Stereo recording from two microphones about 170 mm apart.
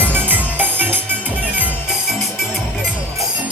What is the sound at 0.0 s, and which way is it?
Music, 10° right (ahead or behind).